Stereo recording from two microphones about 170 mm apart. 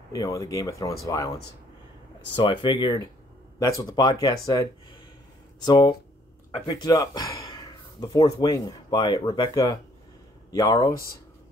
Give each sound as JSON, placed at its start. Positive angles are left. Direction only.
{"t": 0.1, "sound": "speech", "side_deg": 20}
{"t": 5.7, "sound": "speech", "side_deg": 25}